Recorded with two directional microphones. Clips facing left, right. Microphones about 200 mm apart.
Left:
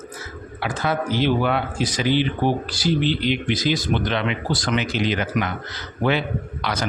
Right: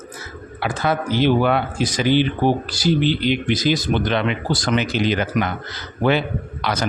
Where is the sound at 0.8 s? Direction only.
50° right (ahead or behind).